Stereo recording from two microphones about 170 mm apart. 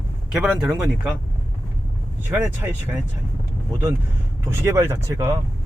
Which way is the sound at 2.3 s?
15° right (ahead or behind).